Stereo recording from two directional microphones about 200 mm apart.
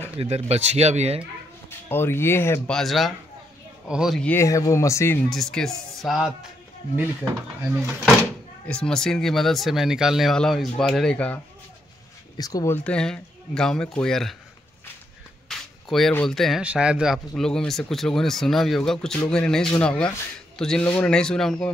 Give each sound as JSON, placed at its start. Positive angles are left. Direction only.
{"t": 0.2, "sound": "speech", "side_deg": -30}
{"t": 1.7, "sound": "speech", "side_deg": 10}
{"t": 5.3, "sound": "speech", "side_deg": 0}
{"t": 7.7, "sound": "speech", "side_deg": 0}
{"t": 12.4, "sound": "speech", "side_deg": 20}
{"t": 15.4, "sound": "speech", "side_deg": 0}